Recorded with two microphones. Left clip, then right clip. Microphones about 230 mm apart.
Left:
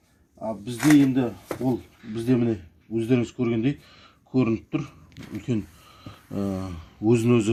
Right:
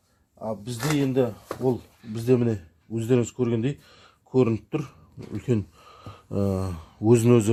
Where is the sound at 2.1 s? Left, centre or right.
Right.